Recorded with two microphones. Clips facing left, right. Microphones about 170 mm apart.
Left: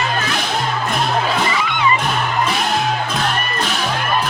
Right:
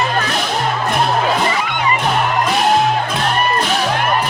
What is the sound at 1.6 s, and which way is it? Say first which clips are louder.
Music: right 1 dB; 50° right (ahead or behind).